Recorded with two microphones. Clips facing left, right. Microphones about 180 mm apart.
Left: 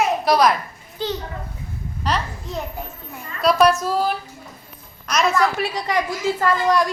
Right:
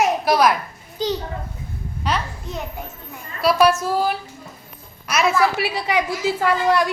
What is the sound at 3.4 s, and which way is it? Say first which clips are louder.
A woman's voice: even; 5° right (ahead or behind).